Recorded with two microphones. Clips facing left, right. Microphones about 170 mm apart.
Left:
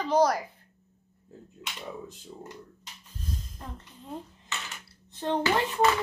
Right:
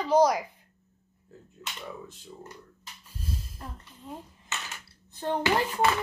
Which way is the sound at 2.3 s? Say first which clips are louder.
Left 1 dB; 25° left (ahead or behind).